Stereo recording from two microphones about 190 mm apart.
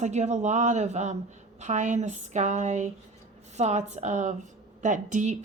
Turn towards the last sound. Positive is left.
turn(degrees=-40)  # may be behind; listen again after turning